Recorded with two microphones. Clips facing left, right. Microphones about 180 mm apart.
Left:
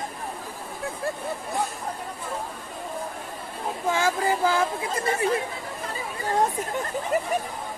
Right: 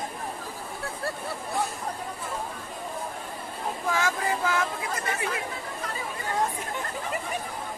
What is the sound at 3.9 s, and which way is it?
Speech, 30° left (ahead or behind).